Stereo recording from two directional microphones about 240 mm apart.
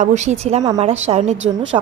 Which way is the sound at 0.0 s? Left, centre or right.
Right.